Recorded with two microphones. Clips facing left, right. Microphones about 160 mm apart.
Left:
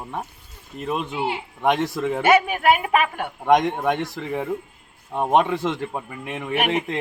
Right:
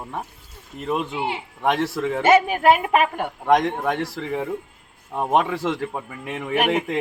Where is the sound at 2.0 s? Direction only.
10° left (ahead or behind).